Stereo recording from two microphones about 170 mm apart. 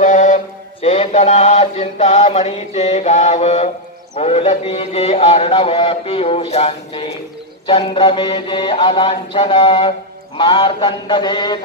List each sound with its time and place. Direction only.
0.0 s mantra: 45° left (ahead or behind); by 11.6 s 25° left (ahead or behind)